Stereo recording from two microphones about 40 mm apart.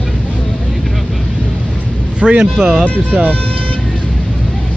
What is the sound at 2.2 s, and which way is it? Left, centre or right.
Speech, right.